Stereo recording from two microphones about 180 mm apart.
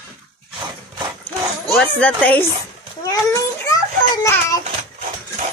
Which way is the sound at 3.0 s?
20° left (ahead or behind).